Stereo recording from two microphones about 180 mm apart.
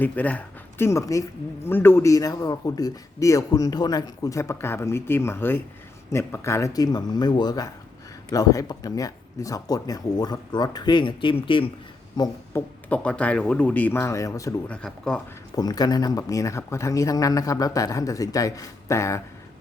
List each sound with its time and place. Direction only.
0.0 s speech: 10° left (ahead or behind); by 11.7 s 30° left (ahead or behind)
12.1 s a sound: 20° left (ahead or behind)
12.9 s speech: 5° left (ahead or behind)
14.7 s speech: 5° left (ahead or behind)
15.5 s speech: 20° left (ahead or behind)